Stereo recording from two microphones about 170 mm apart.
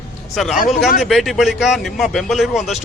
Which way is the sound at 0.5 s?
50° left (ahead or behind).